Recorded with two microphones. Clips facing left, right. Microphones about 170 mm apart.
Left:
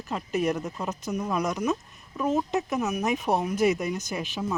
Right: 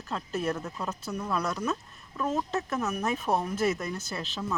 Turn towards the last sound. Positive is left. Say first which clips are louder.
# left 4 dB
turn(degrees=15)  # may be behind; listen again after turning